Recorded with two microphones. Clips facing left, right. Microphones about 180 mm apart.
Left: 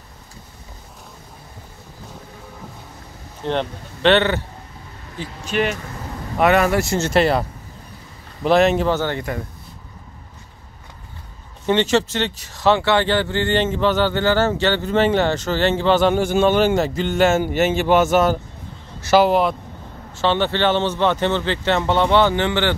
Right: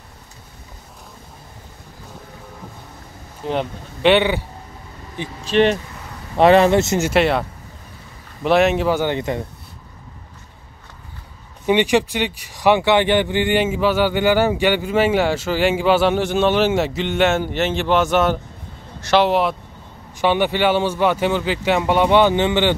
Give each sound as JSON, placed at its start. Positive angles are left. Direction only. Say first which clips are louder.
{"t": 3.4, "sound": "speech", "louder": "even", "side_deg": -10}
{"t": 5.4, "sound": "speech", "louder": "right 6 dB", "side_deg": -35}
{"t": 7.1, "sound": "speech", "louder": "left 3 dB", "side_deg": 0}
{"t": 8.5, "sound": "speech", "louder": "even", "side_deg": 0}
{"t": 11.6, "sound": "speech", "louder": "right 1 dB", "side_deg": -15}
{"t": 20.2, "sound": "speech", "louder": "right 1 dB", "side_deg": -15}